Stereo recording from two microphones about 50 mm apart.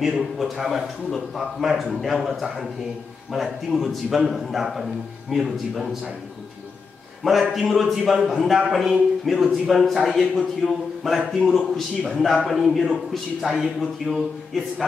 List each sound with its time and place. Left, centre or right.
0.0 s a man's voice: centre
7.2 s a man's voice: centre
9.2 s a man's voice: centre